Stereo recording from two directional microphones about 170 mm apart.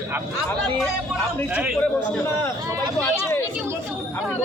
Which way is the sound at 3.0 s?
15° left (ahead or behind).